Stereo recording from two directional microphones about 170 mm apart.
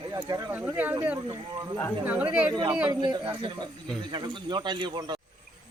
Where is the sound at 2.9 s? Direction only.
25° right (ahead or behind).